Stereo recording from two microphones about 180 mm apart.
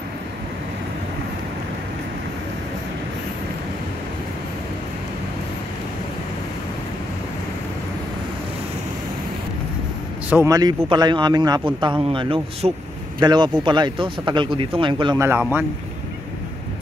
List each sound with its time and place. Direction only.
10.3 s speech: 15° right (ahead or behind)
15.1 s a man's voice: 10° right (ahead or behind)